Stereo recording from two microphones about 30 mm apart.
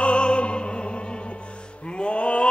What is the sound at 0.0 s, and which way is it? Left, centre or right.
Music, left.